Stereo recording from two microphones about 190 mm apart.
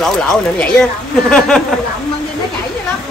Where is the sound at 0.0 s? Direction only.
5° left (ahead or behind).